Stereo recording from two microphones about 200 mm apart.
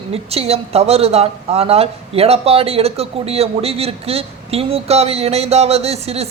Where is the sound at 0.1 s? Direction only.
30° right (ahead or behind).